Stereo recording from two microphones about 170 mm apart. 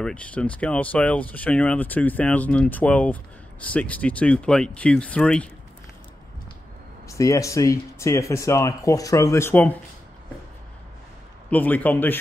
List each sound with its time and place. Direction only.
0.0 s speech: 5° left (ahead or behind)
7.1 s speech: 20° left (ahead or behind)
11.5 s speech: 10° left (ahead or behind)